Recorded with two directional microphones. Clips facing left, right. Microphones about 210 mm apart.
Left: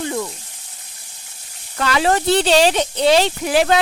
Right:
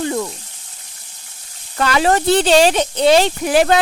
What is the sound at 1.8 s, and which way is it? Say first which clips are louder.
Speech: right 2 dB; 45° right (ahead or behind).